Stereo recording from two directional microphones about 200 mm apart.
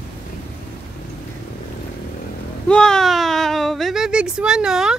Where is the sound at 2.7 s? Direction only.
5° left (ahead or behind).